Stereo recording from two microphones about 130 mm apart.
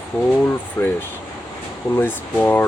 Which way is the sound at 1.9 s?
15° left (ahead or behind).